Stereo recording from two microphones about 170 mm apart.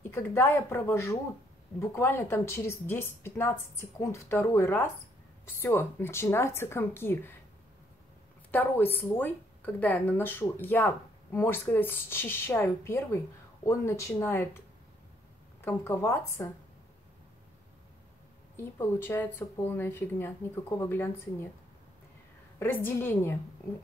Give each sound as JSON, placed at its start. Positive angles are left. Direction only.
{"t": 0.0, "sound": "a woman's voice", "side_deg": 15}
{"t": 8.5, "sound": "a woman's voice", "side_deg": 10}
{"t": 15.6, "sound": "a woman's voice", "side_deg": 15}
{"t": 18.6, "sound": "a woman's voice", "side_deg": 15}
{"t": 22.6, "sound": "a woman's voice", "side_deg": 10}